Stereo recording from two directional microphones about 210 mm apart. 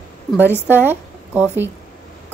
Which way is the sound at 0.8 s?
10° right (ahead or behind).